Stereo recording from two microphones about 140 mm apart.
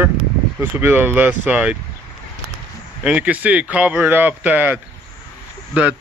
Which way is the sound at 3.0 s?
10° right (ahead or behind).